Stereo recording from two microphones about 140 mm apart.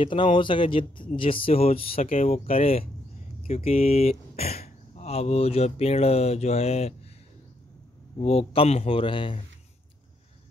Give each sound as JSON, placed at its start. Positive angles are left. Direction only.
{"t": 0.0, "sound": "speech", "side_deg": 35}
{"t": 8.2, "sound": "speech", "side_deg": 45}